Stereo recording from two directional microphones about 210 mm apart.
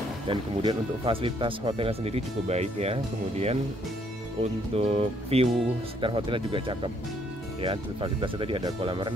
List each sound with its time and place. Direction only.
0.3 s speech: 25° right (ahead or behind)